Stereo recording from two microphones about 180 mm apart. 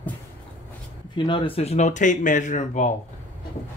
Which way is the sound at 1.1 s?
25° left (ahead or behind).